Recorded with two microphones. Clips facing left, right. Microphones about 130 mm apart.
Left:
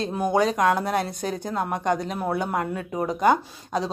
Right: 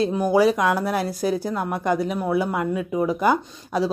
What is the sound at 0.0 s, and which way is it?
Speech, 5° right (ahead or behind).